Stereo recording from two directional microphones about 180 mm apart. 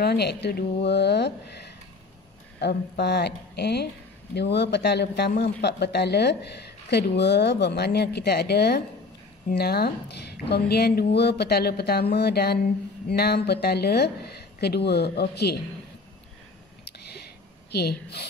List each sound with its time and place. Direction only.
0.0 s a man's voice: 65° left (ahead or behind)
2.6 s a man's voice: 65° left (ahead or behind)
17.6 s a woman's voice: 65° left (ahead or behind)